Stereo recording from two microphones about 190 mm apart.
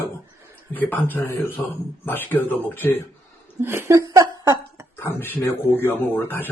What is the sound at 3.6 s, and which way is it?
Speech, 10° right (ahead or behind).